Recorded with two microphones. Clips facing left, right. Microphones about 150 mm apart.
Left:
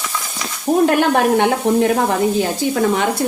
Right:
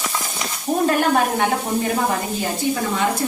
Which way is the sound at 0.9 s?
70° left (ahead or behind).